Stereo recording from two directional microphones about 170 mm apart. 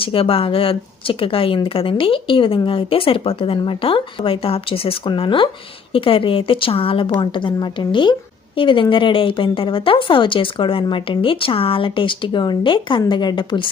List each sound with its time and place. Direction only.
0.0 s speech: 30° left (ahead or behind)